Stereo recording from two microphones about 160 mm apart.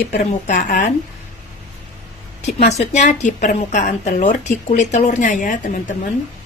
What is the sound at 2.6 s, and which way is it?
Speech, 45° left (ahead or behind).